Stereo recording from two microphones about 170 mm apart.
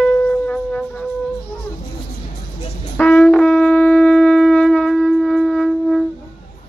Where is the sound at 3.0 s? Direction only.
10° left (ahead or behind).